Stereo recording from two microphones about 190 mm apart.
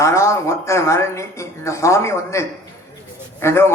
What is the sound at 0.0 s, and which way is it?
A man's voice, 15° left (ahead or behind).